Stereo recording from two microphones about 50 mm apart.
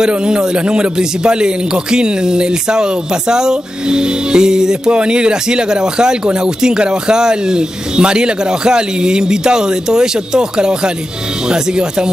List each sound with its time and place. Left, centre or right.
0.0 s a man's voice: centre